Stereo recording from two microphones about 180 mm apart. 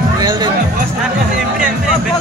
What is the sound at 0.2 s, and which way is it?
Music, 25° right (ahead or behind).